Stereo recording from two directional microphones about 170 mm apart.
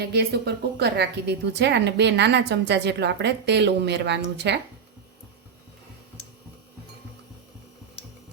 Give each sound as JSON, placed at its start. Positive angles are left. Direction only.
{"t": 0.0, "sound": "a woman's voice", "side_deg": -70}